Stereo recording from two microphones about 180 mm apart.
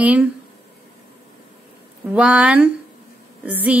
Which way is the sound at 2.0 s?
5° right (ahead or behind).